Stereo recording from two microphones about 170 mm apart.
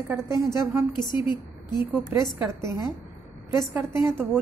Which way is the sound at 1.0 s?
25° left (ahead or behind).